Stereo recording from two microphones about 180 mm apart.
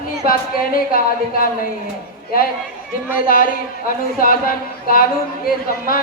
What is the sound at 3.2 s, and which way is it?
Speech, 50° left (ahead or behind).